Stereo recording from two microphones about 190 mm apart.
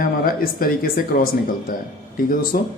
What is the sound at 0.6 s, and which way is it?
Speech, 50° left (ahead or behind).